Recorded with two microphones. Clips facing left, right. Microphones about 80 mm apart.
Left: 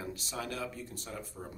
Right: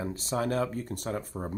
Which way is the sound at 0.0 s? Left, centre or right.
Right.